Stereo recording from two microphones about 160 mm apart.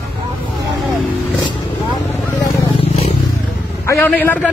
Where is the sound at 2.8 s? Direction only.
40° left (ahead or behind).